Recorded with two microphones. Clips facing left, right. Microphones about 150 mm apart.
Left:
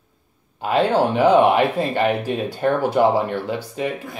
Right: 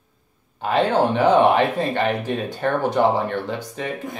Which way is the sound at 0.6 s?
10° left (ahead or behind).